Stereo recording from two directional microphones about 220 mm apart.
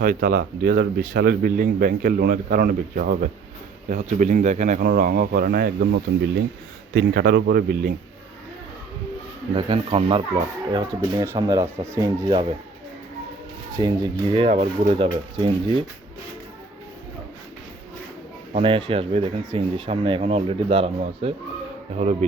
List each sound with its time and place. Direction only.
0.0 s a man's voice: 40° right (ahead or behind)
9.6 s speech: 20° right (ahead or behind)
13.8 s speech: 20° right (ahead or behind)
18.5 s speech: 25° right (ahead or behind)